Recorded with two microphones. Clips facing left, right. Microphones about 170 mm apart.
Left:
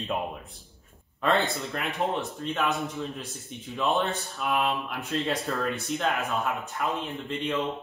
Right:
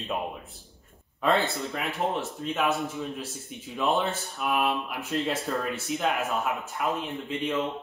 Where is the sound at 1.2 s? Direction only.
Centre (ahead or behind).